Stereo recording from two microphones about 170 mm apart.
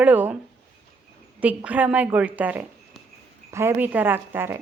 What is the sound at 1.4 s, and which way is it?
A woman's voice, 10° right (ahead or behind).